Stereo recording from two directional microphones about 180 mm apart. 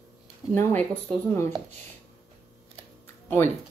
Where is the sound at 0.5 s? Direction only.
10° left (ahead or behind).